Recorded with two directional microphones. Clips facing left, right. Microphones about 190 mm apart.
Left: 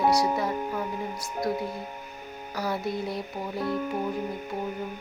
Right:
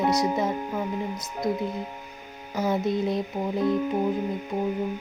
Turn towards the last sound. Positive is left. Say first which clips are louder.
# right 5 dB
turn(degrees=0)  # may be behind; listen again after turning